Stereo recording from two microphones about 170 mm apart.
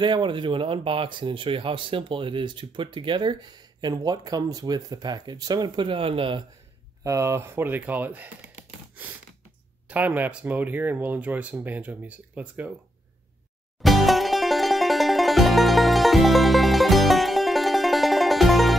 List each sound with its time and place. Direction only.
0.0 s speech: 30° right (ahead or behind)
7.0 s speech: 15° right (ahead or behind)
9.8 s speech: 10° right (ahead or behind)
13.8 s music: centre (ahead or behind)